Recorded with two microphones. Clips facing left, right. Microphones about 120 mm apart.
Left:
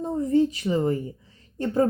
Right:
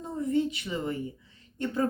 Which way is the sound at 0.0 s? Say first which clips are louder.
Left 6 dB; 35° left (ahead or behind).